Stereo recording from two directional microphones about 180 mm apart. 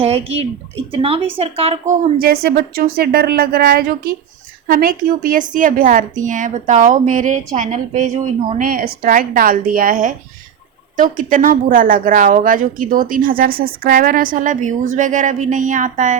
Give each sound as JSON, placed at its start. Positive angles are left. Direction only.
{"t": 0.0, "sound": "a woman's voice", "side_deg": -35}
{"t": 2.1, "sound": "a woman's voice", "side_deg": -55}